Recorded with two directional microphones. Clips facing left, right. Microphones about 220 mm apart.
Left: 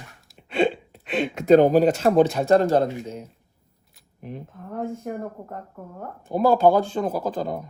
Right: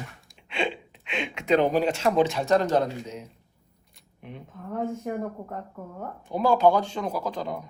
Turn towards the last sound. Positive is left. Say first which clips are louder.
# left 4 dB
turn(degrees=45)  # may be behind; listen again after turning